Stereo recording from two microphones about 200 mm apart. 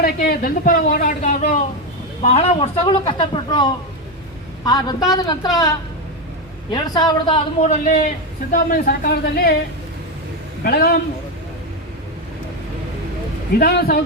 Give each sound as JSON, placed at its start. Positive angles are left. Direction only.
{"t": 0.0, "sound": "speech", "side_deg": 45}
{"t": 7.6, "sound": "a man's voice", "side_deg": 35}
{"t": 8.5, "sound": "speech", "side_deg": 45}
{"t": 10.6, "sound": "speech", "side_deg": 50}
{"t": 13.6, "sound": "speech", "side_deg": 50}